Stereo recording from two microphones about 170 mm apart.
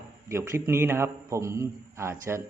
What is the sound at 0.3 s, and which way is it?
A man's voice, 15° right (ahead or behind).